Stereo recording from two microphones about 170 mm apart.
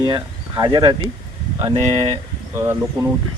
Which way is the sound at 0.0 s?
25° right (ahead or behind).